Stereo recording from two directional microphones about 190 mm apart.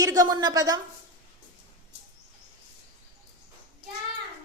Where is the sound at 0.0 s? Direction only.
20° right (ahead or behind).